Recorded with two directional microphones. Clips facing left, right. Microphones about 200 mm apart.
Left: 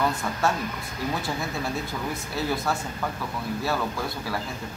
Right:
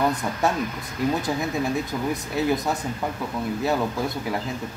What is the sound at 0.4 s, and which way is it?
Speech, 20° right (ahead or behind).